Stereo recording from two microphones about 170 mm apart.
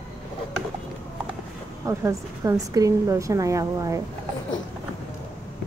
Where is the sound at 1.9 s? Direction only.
15° right (ahead or behind).